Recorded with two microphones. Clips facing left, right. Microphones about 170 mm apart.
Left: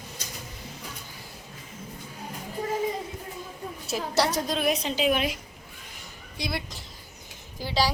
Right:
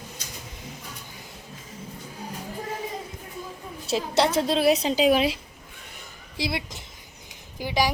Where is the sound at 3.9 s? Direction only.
25° right (ahead or behind).